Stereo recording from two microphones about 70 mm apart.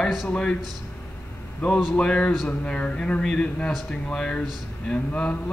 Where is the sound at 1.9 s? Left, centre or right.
Centre.